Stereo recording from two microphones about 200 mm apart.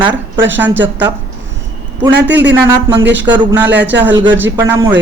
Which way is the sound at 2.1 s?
60° right (ahead or behind).